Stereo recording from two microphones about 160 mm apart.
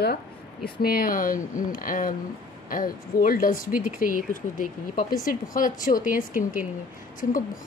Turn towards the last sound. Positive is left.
turn(degrees=60)  # may be behind; listen again after turning